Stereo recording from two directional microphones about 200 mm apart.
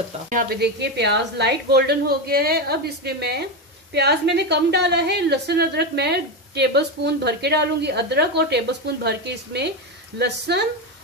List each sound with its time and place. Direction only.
0.3 s speech: 45° right (ahead or behind)
0.7 s a woman's voice: 60° right (ahead or behind)